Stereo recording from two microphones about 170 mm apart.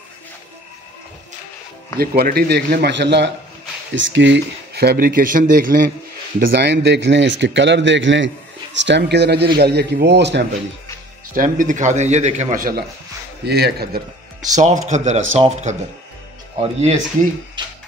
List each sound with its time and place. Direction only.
2.0 s a man's voice: 65° right (ahead or behind)
6.4 s a man's voice: 75° right (ahead or behind); by 10.4 s 90° right
11.3 s a man's voice: 50° right (ahead or behind)
13.5 s a man's voice: 70° right (ahead or behind)
14.5 s a man's voice: 45° right (ahead or behind)
17.6 s music: 25° right (ahead or behind)